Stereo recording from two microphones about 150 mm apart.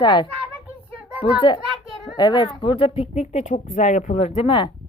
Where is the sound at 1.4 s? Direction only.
30° left (ahead or behind).